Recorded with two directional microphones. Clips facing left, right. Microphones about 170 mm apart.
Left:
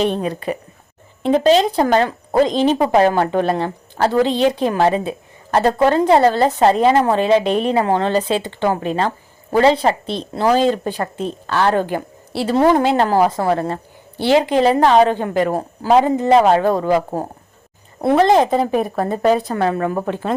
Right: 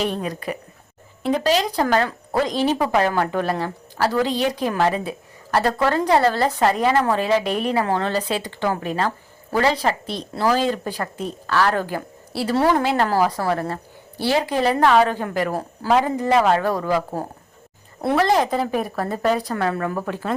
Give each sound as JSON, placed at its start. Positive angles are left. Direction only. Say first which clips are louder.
{"t": 0.0, "sound": "a woman's voice", "louder": "left 5 dB", "side_deg": 25}